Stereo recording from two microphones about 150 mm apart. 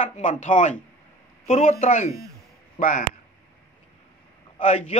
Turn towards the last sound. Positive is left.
turn(degrees=40)  # may be behind; listen again after turning